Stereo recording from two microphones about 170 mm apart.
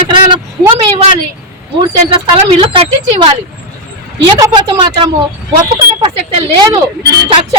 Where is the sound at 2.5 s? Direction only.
35° right (ahead or behind).